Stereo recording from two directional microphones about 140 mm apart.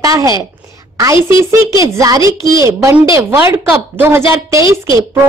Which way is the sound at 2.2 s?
35° left (ahead or behind).